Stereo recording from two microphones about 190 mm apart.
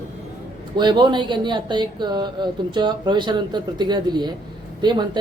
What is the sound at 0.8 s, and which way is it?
Speech, 25° right (ahead or behind).